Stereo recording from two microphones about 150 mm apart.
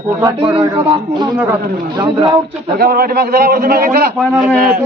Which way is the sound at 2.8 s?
85° right.